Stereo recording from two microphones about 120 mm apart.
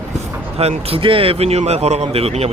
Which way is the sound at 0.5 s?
55° right (ahead or behind).